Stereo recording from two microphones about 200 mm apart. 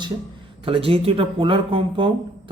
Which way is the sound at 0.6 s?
30° right (ahead or behind).